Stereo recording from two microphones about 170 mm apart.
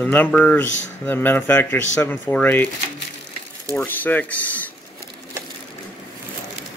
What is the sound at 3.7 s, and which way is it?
Speech, 10° left (ahead or behind).